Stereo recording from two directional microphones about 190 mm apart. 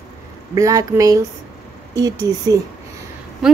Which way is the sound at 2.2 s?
20° right (ahead or behind).